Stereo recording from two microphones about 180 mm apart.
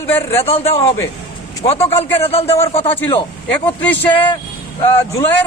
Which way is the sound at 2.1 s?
35° left (ahead or behind).